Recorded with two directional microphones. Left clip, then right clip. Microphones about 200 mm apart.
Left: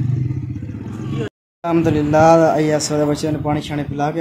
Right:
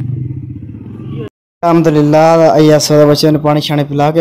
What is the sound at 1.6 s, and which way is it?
Speech, 30° right (ahead or behind).